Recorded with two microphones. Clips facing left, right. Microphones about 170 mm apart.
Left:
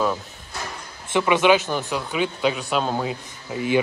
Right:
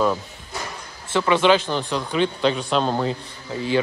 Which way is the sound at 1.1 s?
10° left (ahead or behind).